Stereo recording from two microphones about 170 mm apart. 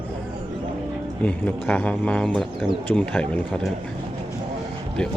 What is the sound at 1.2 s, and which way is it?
Speech, 10° left (ahead or behind).